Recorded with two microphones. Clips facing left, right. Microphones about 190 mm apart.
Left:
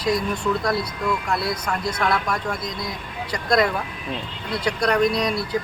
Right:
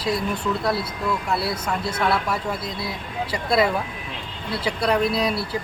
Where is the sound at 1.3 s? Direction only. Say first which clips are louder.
Even; 5° right (ahead or behind).